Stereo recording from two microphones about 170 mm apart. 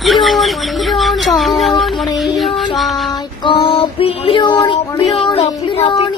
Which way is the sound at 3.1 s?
30° left (ahead or behind).